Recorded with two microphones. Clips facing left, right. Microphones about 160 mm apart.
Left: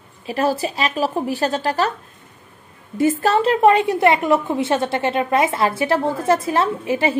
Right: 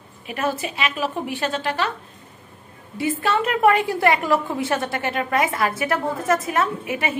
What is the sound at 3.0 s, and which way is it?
A woman's voice, 40° left (ahead or behind).